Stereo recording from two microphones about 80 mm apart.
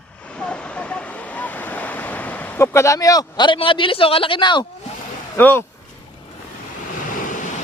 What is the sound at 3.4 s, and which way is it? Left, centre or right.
A man's voice, left.